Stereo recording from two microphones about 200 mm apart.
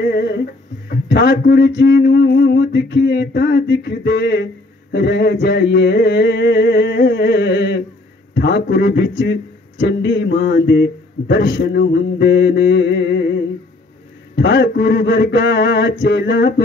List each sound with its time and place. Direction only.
0.0 s music: 55° left (ahead or behind)
0.8 s a man's voice: 55° left (ahead or behind)